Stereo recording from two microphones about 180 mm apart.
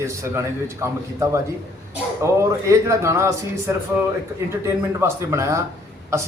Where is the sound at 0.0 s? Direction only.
15° right (ahead or behind).